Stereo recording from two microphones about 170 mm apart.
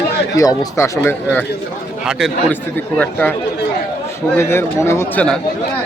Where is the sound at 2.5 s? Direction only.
10° left (ahead or behind).